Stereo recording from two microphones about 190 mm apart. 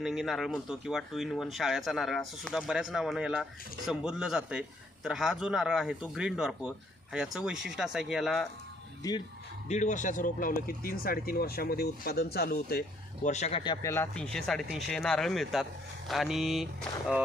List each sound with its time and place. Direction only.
0.0 s speech: centre (ahead or behind)
9.6 s speech: 40° left (ahead or behind); by 12.8 s 55° left (ahead or behind)
13.2 s a man's voice: 35° left (ahead or behind)
13.9 s speech: 10° left (ahead or behind)